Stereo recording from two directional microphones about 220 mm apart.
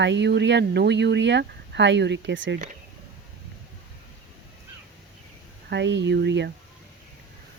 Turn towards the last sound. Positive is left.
turn(degrees=-50)  # may be behind; listen again after turning